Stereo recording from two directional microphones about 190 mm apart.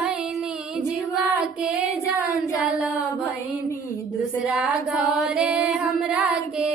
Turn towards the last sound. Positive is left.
turn(degrees=0)  # may be behind; listen again after turning